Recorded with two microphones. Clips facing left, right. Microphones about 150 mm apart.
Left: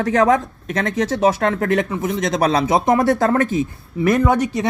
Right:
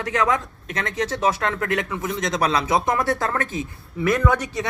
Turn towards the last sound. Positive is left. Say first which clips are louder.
# left 5 dB
turn(degrees=25)  # may be behind; listen again after turning